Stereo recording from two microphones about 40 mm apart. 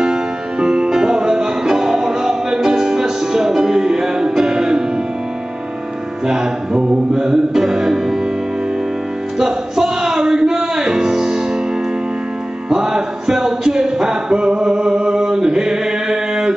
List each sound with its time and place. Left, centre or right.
0.0 s music: centre
6.2 s music: centre
9.4 s music: centre
12.6 s music: centre